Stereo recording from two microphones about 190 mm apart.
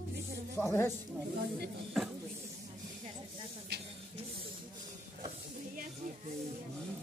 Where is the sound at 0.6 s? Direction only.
10° left (ahead or behind).